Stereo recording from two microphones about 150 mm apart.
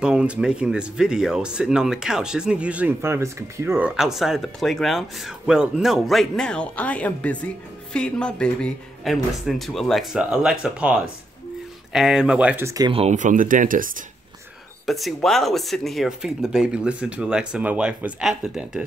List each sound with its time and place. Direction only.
0.0 s speech: 5° right (ahead or behind)
3.9 s speech: centre (ahead or behind)
12.6 s speech: 25° right (ahead or behind)
12.9 s speech: 50° right (ahead or behind); by 14.0 s 65° right (ahead or behind)
14.9 s speech: centre (ahead or behind)